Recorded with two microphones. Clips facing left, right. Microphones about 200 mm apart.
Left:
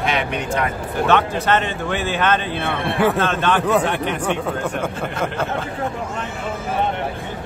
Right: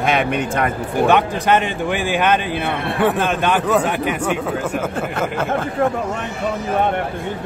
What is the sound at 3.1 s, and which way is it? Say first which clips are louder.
Speech: right 1 dB; 15° right (ahead or behind).